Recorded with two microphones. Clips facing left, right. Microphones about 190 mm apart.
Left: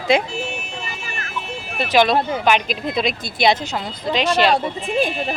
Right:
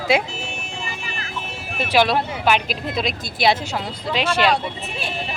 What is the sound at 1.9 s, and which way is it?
Speech, 5° right (ahead or behind).